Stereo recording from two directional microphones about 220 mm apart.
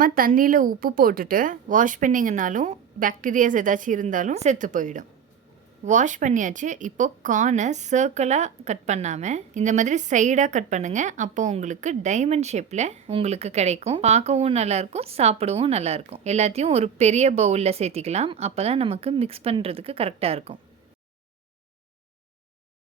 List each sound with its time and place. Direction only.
0.0 s speech: 40° right (ahead or behind)